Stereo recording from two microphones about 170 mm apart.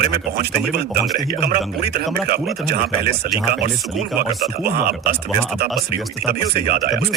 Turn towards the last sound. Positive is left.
turn(degrees=-60)  # may be behind; listen again after turning